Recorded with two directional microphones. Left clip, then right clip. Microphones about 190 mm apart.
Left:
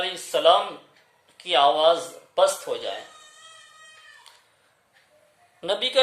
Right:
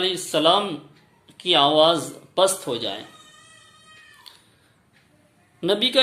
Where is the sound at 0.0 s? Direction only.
30° right (ahead or behind).